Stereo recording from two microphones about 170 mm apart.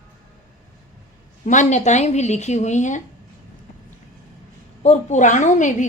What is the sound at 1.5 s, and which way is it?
A woman's voice, 45° left (ahead or behind).